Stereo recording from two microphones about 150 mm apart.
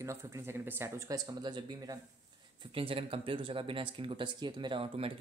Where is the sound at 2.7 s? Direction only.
40° right (ahead or behind).